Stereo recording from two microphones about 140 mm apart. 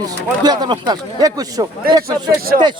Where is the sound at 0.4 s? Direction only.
30° right (ahead or behind).